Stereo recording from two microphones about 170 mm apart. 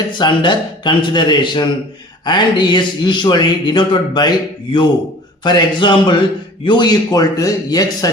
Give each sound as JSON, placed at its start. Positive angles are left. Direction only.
{"t": 0.1, "sound": "speech", "side_deg": 25}